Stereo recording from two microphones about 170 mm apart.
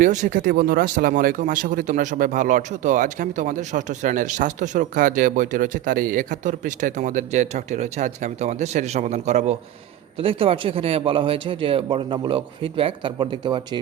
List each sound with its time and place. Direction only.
0.0 s speech: 50° right (ahead or behind); by 13.6 s 25° right (ahead or behind)